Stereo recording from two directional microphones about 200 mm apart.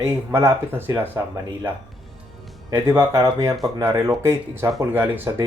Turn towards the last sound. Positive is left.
turn(degrees=-15)  # may be behind; listen again after turning